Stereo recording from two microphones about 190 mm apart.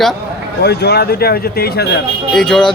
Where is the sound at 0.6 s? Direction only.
60° left (ahead or behind).